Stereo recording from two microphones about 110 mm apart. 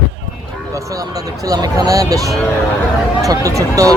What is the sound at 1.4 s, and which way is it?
Speech, 30° right (ahead or behind).